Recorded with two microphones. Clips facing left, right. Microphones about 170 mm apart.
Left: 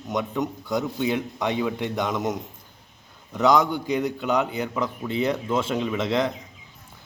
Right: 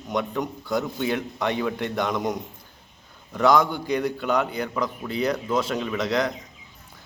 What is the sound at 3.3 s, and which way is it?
A man's voice, 20° left (ahead or behind).